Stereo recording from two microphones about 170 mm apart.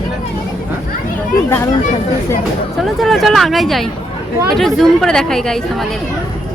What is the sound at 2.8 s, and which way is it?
Speech, centre (ahead or behind).